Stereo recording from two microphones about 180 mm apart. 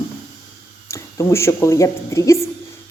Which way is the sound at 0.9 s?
15° left (ahead or behind).